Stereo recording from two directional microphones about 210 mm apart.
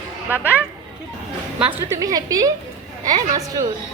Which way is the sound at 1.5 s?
5° right (ahead or behind).